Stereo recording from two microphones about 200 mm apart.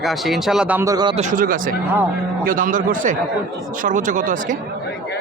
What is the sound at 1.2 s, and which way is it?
Speech, 40° right (ahead or behind).